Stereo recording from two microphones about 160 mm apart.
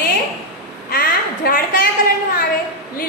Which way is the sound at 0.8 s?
65° left (ahead or behind).